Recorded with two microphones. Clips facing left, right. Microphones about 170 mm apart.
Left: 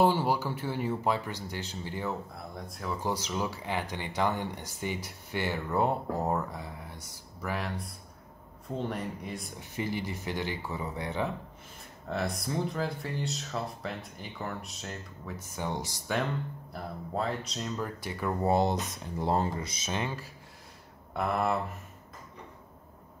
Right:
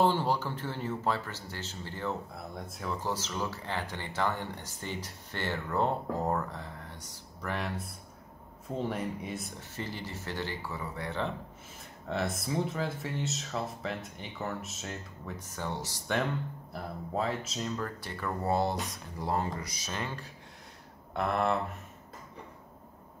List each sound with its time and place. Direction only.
0.0 s speech: 10° left (ahead or behind)
2.0 s speech: centre (ahead or behind)
3.0 s speech: 15° left (ahead or behind)
7.4 s speech: centre (ahead or behind)
9.6 s speech: 15° left (ahead or behind)
12.1 s speech: centre (ahead or behind)
15.5 s speech: 15° left (ahead or behind)
16.7 s speech: centre (ahead or behind)
17.7 s speech: 10° left (ahead or behind)
21.1 s speech: centre (ahead or behind)